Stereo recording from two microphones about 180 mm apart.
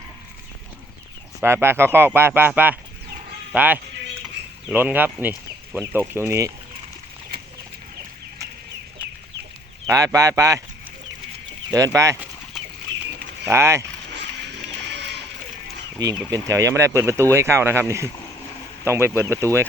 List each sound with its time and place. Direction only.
1.4 s speech: 15° right (ahead or behind)
9.8 s speech: 20° right (ahead or behind)
11.7 s speech: 15° right (ahead or behind)
13.4 s speech: 15° right (ahead or behind)
14.8 s a sound: 70° right (ahead or behind)
16.0 s speech: 20° right (ahead or behind)